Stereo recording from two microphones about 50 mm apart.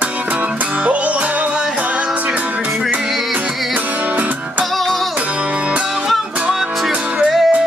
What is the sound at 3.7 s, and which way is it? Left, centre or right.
Music, right.